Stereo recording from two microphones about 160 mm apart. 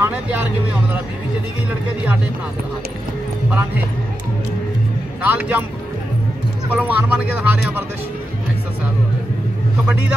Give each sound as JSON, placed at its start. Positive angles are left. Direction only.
{"t": 0.0, "sound": "a sound", "side_deg": -10}
{"t": 5.2, "sound": "speech", "side_deg": -10}
{"t": 6.7, "sound": "speech", "side_deg": -10}